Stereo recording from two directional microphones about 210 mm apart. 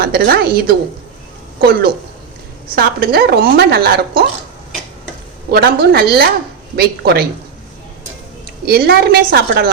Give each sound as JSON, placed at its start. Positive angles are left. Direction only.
{"t": 0.0, "sound": "speech", "side_deg": -50}
{"t": 2.7, "sound": "speech", "side_deg": -45}
{"t": 5.5, "sound": "speech", "side_deg": -50}
{"t": 8.6, "sound": "speech", "side_deg": -50}